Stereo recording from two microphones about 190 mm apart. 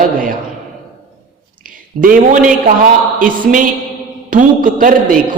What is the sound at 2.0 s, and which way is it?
A man's voice, 45° right (ahead or behind).